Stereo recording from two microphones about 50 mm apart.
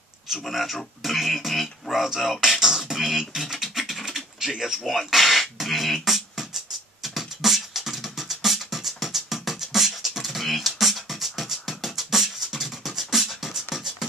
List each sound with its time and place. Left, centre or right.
0.4 s a man's voice: centre
2.4 s beatboxing: centre